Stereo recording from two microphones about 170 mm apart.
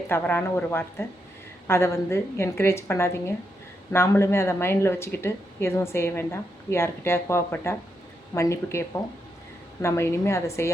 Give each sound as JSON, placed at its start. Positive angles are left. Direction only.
{"t": 0.1, "sound": "speech", "side_deg": 15}
{"t": 9.8, "sound": "speech", "side_deg": 15}